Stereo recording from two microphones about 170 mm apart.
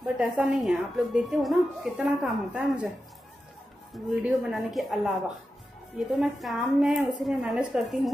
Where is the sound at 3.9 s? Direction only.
Centre (ahead or behind).